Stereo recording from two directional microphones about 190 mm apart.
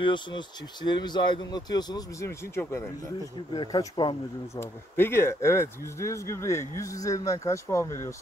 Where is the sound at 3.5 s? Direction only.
25° left (ahead or behind).